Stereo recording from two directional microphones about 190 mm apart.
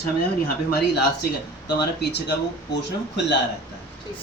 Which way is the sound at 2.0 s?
60° left (ahead or behind).